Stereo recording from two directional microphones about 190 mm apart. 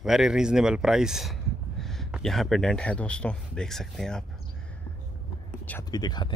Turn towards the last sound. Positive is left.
turn(degrees=20)  # may be behind; listen again after turning